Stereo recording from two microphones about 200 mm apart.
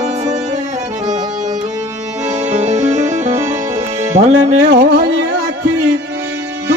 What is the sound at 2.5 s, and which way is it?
Music, 35° right (ahead or behind).